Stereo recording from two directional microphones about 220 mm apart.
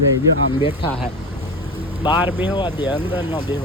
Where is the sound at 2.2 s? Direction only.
10° right (ahead or behind).